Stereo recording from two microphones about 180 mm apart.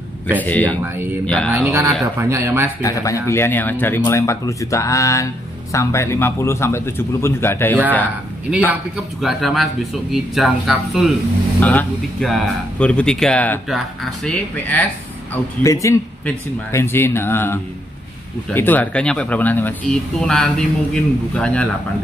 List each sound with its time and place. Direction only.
0.4 s speech: 10° left (ahead or behind)
1.7 s speech: 15° right (ahead or behind)
2.8 s speech: 20° left (ahead or behind)
9.2 s speech: centre (ahead or behind)
15.6 s speech: 15° left (ahead or behind)